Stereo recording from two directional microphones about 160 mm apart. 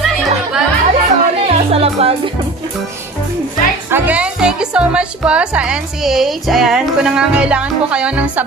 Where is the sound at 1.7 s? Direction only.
40° right (ahead or behind).